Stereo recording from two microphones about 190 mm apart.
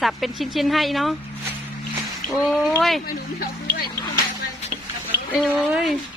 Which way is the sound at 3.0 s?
55° left (ahead or behind).